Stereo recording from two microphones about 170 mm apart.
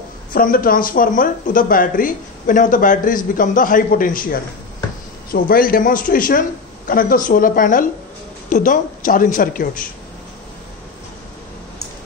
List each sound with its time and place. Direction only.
0.3 s speech: 55° left (ahead or behind)